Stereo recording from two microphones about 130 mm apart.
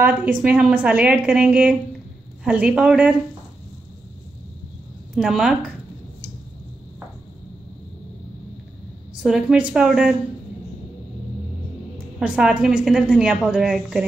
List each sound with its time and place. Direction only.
0.0 s a woman's voice: 10° right (ahead or behind)
5.1 s a woman's voice: 5° right (ahead or behind)
9.2 s a woman's voice: 5° right (ahead or behind)
12.2 s a woman's voice: 5° right (ahead or behind)